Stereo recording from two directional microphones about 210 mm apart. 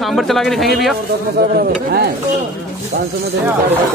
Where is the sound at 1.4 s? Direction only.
45° right (ahead or behind).